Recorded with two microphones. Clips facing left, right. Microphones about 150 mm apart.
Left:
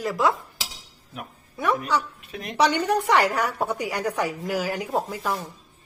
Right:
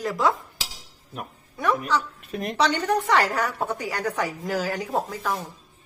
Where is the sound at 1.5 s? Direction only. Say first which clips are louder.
Even; centre (ahead or behind).